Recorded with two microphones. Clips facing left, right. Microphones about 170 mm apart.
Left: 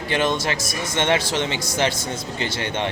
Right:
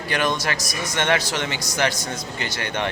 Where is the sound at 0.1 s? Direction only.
25° left (ahead or behind).